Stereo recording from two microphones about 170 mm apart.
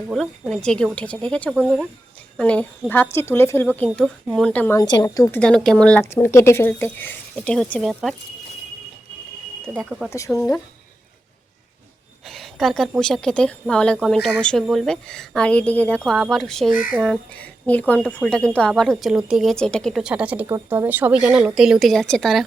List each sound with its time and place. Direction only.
0.1 s a woman's voice: centre (ahead or behind)
3.8 s a woman's voice: centre (ahead or behind)
4.8 s speech: 25° left (ahead or behind)
5.4 s speech: 5° left (ahead or behind)
10.1 s speech: 15° left (ahead or behind)
12.2 s a sound: centre (ahead or behind)
13.0 s a woman's voice: 5° left (ahead or behind)